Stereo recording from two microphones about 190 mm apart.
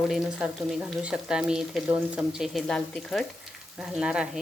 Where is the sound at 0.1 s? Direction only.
5° right (ahead or behind).